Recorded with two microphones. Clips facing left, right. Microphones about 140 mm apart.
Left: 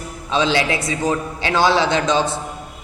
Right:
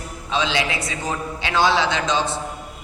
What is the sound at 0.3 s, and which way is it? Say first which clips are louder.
A man's voice: left 4 dB; 40° left (ahead or behind).